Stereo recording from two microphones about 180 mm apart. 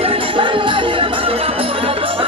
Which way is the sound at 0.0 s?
30° right (ahead or behind).